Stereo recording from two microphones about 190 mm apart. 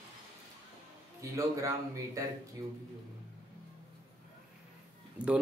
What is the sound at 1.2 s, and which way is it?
Speech, 15° right (ahead or behind).